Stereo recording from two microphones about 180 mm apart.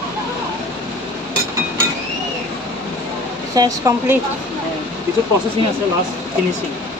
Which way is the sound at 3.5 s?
20° right (ahead or behind).